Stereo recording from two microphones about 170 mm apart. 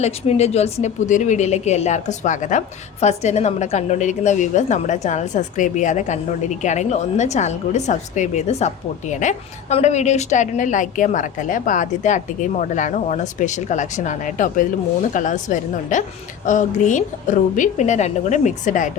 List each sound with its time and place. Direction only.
0.0 s a woman's voice: 40° left (ahead or behind)